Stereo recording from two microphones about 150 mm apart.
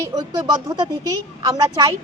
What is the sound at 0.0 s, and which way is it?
Speech, 25° right (ahead or behind).